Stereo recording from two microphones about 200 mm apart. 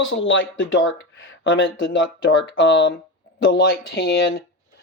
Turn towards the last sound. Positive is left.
turn(degrees=50)  # may be behind; listen again after turning